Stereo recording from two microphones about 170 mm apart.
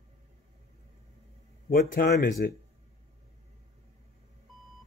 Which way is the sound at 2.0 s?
60° left (ahead or behind).